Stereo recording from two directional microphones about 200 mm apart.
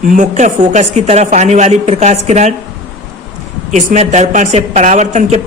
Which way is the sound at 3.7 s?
35° right (ahead or behind).